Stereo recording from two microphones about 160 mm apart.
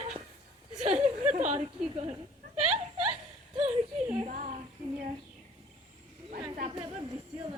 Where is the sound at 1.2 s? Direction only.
50° right (ahead or behind).